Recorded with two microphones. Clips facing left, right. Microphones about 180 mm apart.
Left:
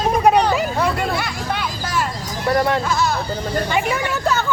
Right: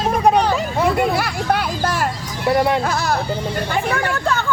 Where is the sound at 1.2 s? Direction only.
55° right (ahead or behind).